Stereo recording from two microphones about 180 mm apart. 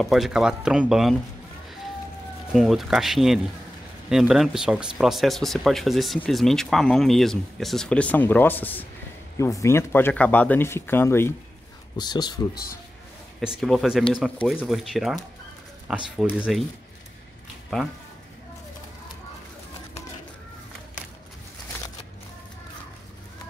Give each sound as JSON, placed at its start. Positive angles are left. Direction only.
{"t": 0.0, "sound": "speech", "side_deg": 0}
{"t": 2.5, "sound": "speech", "side_deg": 0}
{"t": 13.4, "sound": "speech", "side_deg": 0}